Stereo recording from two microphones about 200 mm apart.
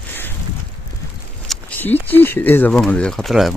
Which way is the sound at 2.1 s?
10° left (ahead or behind).